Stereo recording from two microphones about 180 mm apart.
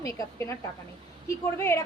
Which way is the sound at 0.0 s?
15° left (ahead or behind).